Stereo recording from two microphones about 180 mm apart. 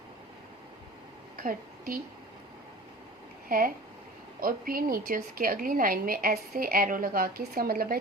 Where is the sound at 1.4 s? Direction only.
50° right (ahead or behind).